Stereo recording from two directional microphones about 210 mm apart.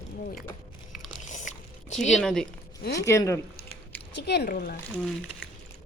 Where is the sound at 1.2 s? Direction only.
35° left (ahead or behind).